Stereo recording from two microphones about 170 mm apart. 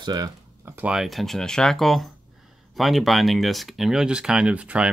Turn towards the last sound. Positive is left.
turn(degrees=-5)  # may be behind; listen again after turning